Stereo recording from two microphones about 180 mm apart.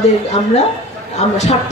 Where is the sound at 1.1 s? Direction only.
35° left (ahead or behind).